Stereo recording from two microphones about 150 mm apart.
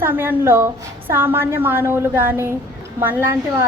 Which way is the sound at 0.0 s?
15° right (ahead or behind).